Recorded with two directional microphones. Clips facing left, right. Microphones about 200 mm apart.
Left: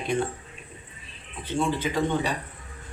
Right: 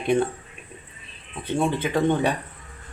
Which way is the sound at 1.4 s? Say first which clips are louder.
Right 3 dB; 55° right (ahead or behind).